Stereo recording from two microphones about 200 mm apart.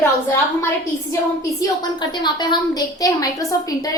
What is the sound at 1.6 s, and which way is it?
A woman's voice, 20° left (ahead or behind).